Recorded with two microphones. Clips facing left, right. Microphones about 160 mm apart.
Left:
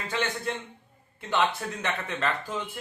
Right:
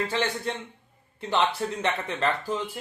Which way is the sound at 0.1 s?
35° right (ahead or behind).